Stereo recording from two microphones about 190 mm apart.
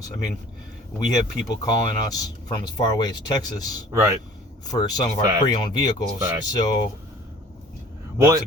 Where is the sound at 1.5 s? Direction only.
20° left (ahead or behind).